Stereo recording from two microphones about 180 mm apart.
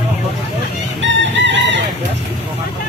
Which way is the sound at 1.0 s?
85° right.